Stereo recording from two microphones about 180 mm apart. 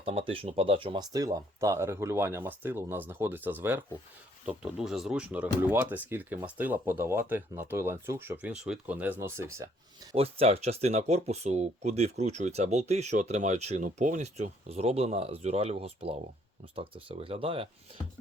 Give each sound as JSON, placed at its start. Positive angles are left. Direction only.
{"t": 0.0, "sound": "speech", "side_deg": -35}
{"t": 10.2, "sound": "speech", "side_deg": -35}